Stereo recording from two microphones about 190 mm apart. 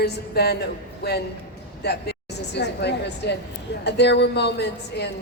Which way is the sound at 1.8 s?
60° left (ahead or behind).